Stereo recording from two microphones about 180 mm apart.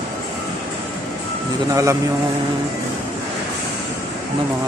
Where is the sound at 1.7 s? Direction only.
20° right (ahead or behind).